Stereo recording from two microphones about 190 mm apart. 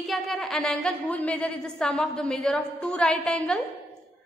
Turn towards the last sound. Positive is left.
turn(degrees=5)  # may be behind; listen again after turning